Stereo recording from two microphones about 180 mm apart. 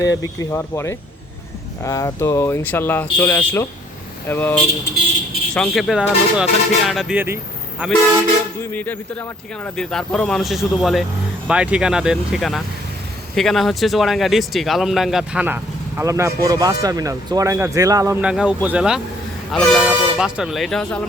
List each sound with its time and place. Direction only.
0.0 s speech: 20° left (ahead or behind)
5.5 s speech: centre (ahead or behind)
8.7 s speech: 10° left (ahead or behind); by 18.2 s 20° right (ahead or behind)
18.2 s speech: 5° right (ahead or behind)